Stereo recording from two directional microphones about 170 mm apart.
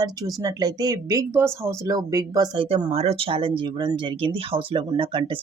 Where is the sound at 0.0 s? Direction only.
20° right (ahead or behind).